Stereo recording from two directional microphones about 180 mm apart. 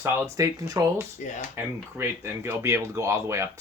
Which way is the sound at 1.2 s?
45° left (ahead or behind).